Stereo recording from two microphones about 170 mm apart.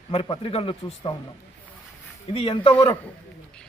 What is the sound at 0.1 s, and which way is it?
A man's voice, 35° left (ahead or behind).